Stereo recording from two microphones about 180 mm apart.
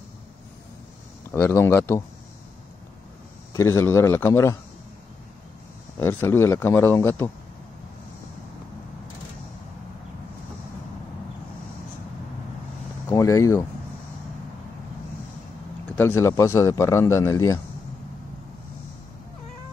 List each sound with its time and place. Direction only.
1.3 s speech: 15° left (ahead or behind)
3.5 s speech: 15° left (ahead or behind)
5.9 s speech: 15° left (ahead or behind)
13.1 s speech: 15° left (ahead or behind)
16.0 s speech: 15° left (ahead or behind)